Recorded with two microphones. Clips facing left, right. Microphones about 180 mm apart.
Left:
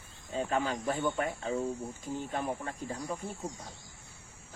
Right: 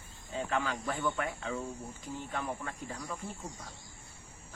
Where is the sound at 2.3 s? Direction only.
35° left (ahead or behind).